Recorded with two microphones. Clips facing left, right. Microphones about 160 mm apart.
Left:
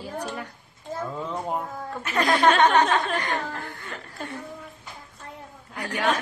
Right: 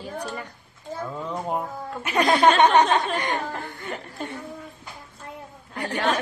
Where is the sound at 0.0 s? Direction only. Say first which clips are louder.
Even; 5° left (ahead or behind).